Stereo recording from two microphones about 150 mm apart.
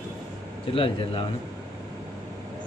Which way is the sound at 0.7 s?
35° left (ahead or behind).